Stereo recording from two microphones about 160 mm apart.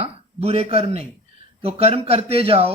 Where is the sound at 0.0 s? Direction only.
40° right (ahead or behind).